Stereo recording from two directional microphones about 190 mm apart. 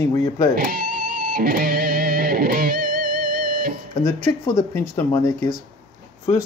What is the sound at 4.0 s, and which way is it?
Speech, 20° left (ahead or behind).